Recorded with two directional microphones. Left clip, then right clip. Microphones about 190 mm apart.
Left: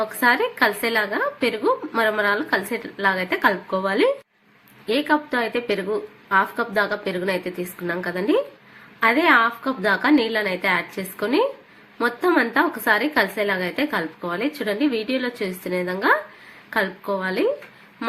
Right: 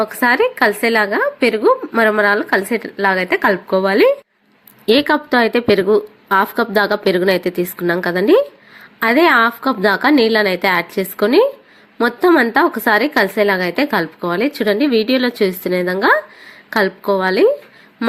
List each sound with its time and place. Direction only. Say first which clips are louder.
0.0 s a woman's voice: right 5 dB; 35° right (ahead or behind)
4.9 s a woman's voice: right 7 dB; 45° right (ahead or behind)